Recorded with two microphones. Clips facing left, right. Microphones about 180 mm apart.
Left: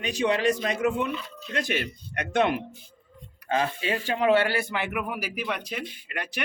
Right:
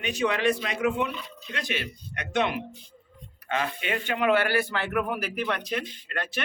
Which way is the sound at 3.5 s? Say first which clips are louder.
Left 3 dB; 30° left (ahead or behind).